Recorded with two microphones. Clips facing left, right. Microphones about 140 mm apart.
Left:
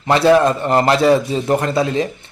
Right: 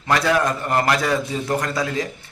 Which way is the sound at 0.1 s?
25° left (ahead or behind).